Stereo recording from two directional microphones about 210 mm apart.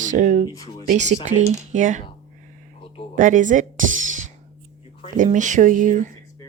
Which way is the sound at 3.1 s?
40° right (ahead or behind).